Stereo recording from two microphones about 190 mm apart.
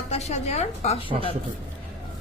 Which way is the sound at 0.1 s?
35° left (ahead or behind).